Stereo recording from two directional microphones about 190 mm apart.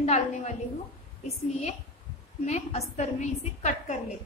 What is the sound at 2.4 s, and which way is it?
A woman's voice, 35° left (ahead or behind).